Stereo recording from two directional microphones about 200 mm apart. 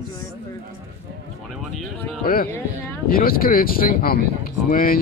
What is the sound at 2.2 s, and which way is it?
Speech, 45° left (ahead or behind).